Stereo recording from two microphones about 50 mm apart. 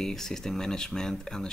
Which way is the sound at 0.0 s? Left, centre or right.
Centre.